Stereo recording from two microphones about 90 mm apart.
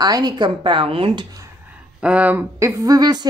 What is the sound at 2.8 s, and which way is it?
Speech, 45° right (ahead or behind).